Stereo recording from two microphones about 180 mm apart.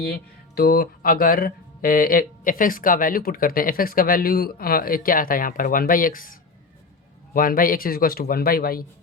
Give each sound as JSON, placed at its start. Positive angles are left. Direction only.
{"t": 0.0, "sound": "speech", "side_deg": 60}
{"t": 7.3, "sound": "speech", "side_deg": 50}